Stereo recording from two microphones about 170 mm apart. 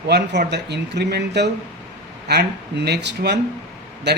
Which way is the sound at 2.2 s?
75° right (ahead or behind).